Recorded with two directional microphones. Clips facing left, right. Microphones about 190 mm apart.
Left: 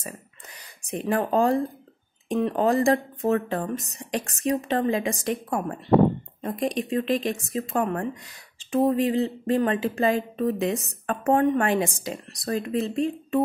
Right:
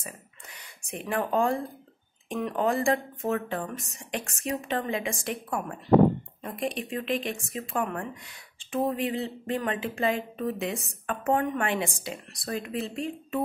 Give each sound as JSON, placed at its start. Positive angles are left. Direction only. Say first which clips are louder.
{"t": 0.8, "sound": "speech", "louder": "left 5 dB", "side_deg": 35}